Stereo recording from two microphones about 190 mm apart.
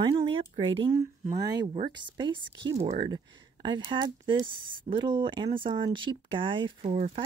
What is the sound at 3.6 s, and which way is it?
Speech, 25° right (ahead or behind).